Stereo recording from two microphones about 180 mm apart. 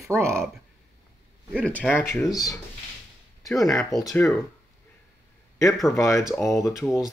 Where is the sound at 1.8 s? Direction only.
Centre (ahead or behind).